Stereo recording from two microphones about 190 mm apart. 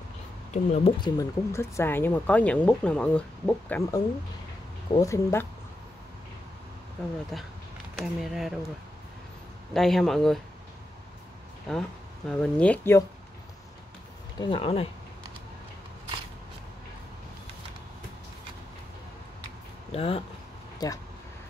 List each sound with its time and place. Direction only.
0.5 s speech: 35° left (ahead or behind)
1.0 s speech: 15° left (ahead or behind)
8.0 s speech: centre (ahead or behind)
9.8 s speech: centre (ahead or behind)
11.7 s speech: 5° left (ahead or behind)
14.4 s speech: 30° left (ahead or behind)
19.9 s speech: 30° left (ahead or behind)
20.8 s speech: 20° left (ahead or behind)